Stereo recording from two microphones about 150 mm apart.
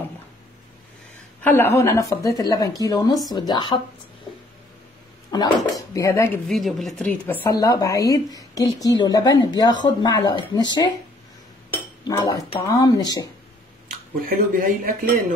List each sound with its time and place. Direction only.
1.4 s a woman's voice: 15° left (ahead or behind); by 3.8 s 30° left (ahead or behind)
5.3 s a woman's voice: 25° left (ahead or behind)
6.4 s speech: centre (ahead or behind)
7.6 s a woman's voice: 20° left (ahead or behind)
12.1 s a woman's voice: 25° left (ahead or behind)
14.2 s speech: 70° right (ahead or behind)